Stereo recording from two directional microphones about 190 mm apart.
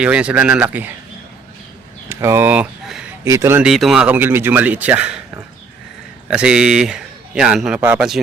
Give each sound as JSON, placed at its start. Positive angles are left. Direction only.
{"t": 0.0, "sound": "a man's voice", "side_deg": -5}
{"t": 2.0, "sound": "a sound", "side_deg": -15}
{"t": 3.2, "sound": "a man's voice", "side_deg": -15}
{"t": 3.7, "sound": "a man's voice", "side_deg": 0}